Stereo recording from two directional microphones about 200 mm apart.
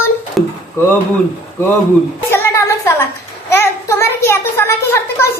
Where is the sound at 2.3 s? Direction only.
15° left (ahead or behind).